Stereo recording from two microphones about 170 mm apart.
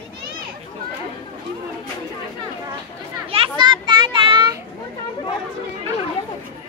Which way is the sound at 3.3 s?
30° right (ahead or behind).